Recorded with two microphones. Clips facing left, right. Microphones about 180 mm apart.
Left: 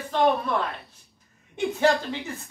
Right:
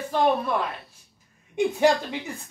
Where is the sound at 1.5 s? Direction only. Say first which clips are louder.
Right 2 dB; 15° right (ahead or behind).